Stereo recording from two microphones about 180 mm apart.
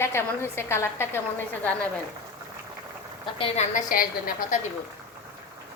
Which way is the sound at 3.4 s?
40° left (ahead or behind).